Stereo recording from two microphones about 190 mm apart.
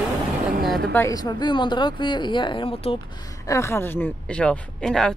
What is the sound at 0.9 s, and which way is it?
Speech, 15° left (ahead or behind).